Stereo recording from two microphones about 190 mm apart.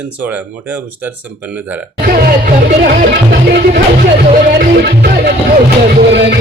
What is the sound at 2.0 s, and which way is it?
Music, 50° right (ahead or behind).